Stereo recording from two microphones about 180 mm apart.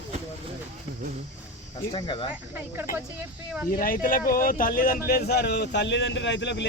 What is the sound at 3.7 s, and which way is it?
Speech, 50° left (ahead or behind).